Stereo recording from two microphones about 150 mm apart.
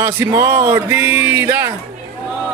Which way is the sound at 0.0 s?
15° right (ahead or behind).